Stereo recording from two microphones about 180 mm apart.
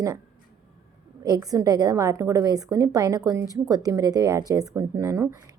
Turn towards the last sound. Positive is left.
turn(degrees=-15)  # may be behind; listen again after turning